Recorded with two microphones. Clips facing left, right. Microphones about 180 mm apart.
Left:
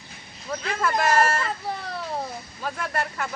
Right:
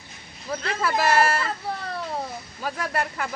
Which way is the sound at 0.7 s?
5° right (ahead or behind).